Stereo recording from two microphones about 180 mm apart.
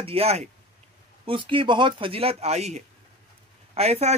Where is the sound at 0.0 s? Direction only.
35° right (ahead or behind).